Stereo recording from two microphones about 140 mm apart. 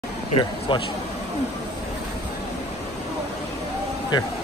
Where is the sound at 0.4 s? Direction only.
35° left (ahead or behind).